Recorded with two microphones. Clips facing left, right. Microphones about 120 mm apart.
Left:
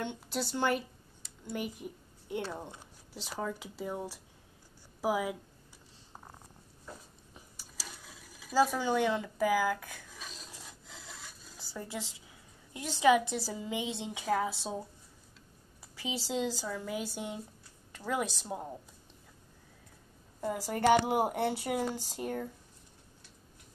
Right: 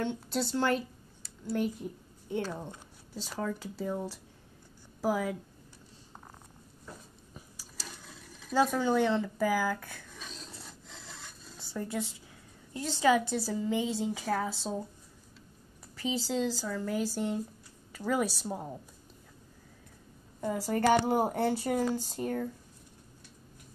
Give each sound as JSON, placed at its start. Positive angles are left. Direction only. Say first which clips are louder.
{"t": 0.0, "sound": "a woman's voice", "louder": "right 4 dB", "side_deg": 0}
{"t": 6.9, "sound": "a sound", "louder": "even", "side_deg": 0}
{"t": 12.7, "sound": "speech", "louder": "even", "side_deg": 15}
{"t": 16.0, "sound": "speech", "louder": "right 5 dB", "side_deg": 5}
{"t": 16.3, "sound": "speech", "louder": "left 1 dB", "side_deg": 15}
{"t": 20.3, "sound": "speech", "louder": "right 3 dB", "side_deg": 0}